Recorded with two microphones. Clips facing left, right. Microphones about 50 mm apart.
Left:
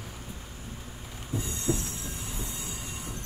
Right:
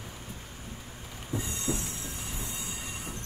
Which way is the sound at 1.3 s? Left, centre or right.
Right.